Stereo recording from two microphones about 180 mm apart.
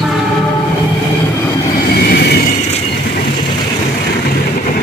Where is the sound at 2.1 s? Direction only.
60° left (ahead or behind).